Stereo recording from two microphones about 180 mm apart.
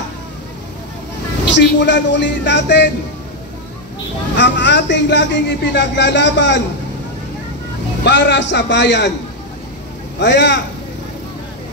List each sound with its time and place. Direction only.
1.5 s speech: 75° left (ahead or behind)
4.4 s speech: 80° left
8.0 s speech: 80° left
10.1 s speech: 80° left